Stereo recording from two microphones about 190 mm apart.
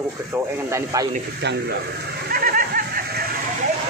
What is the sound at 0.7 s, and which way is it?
Speech, 15° right (ahead or behind).